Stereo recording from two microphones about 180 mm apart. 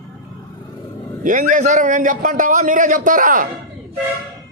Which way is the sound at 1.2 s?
45° right (ahead or behind).